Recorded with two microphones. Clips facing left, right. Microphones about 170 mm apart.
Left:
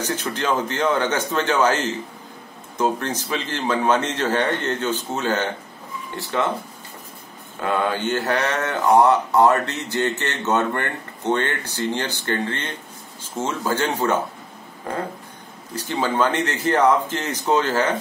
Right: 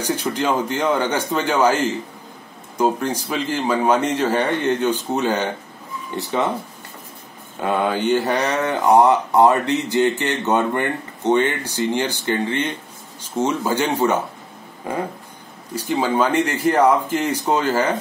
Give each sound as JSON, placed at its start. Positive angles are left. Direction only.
{"t": 0.0, "sound": "speech", "side_deg": -10}
{"t": 2.8, "sound": "speech", "side_deg": -10}
{"t": 7.6, "sound": "speech", "side_deg": -15}
{"t": 15.7, "sound": "speech", "side_deg": -10}